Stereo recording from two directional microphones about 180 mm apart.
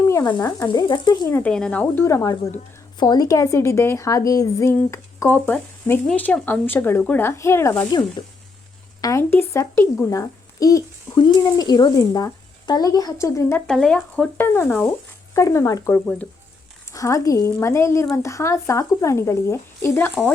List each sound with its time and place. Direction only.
0.1 s sizzle: 20° left (ahead or behind)
0.7 s speech: 25° left (ahead or behind)
1.3 s a woman's voice: 10° left (ahead or behind)
9.0 s speech: 15° left (ahead or behind)
13.7 s a woman's voice: 5° left (ahead or behind)